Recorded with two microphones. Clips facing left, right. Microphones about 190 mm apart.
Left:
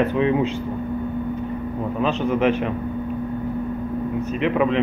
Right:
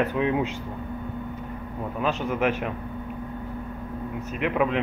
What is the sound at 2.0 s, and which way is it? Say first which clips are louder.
Speech: left 4 dB; 5° right (ahead or behind).